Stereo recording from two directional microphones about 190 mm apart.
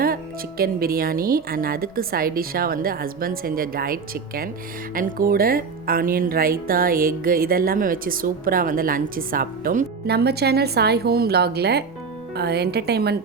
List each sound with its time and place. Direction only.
0.0 s a woman's voice: 50° right (ahead or behind)